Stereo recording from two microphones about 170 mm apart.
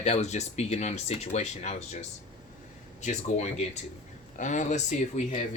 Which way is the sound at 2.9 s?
40° left (ahead or behind).